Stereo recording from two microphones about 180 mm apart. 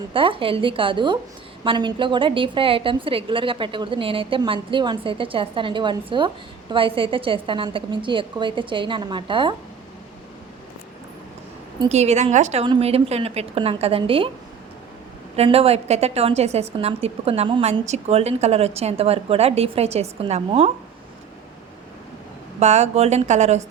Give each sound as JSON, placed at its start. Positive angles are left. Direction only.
{"t": 0.1, "sound": "a woman's voice", "side_deg": -30}
{"t": 11.9, "sound": "a woman's voice", "side_deg": -35}
{"t": 12.6, "sound": "a woman's voice", "side_deg": -30}
{"t": 15.4, "sound": "a woman's voice", "side_deg": -35}
{"t": 22.6, "sound": "a woman's voice", "side_deg": -40}